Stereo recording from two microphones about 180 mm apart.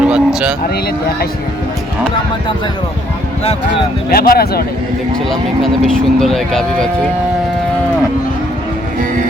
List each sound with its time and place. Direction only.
0.0 s a sound: 5° right (ahead or behind)
4.1 s speech: 55° left (ahead or behind)
5.3 s speech: centre (ahead or behind)